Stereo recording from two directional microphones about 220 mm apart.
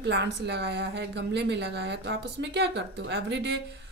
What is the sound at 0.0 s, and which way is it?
A woman's voice, 50° right (ahead or behind).